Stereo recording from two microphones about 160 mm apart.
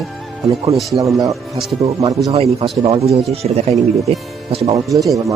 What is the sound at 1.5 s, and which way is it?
Speech, centre (ahead or behind).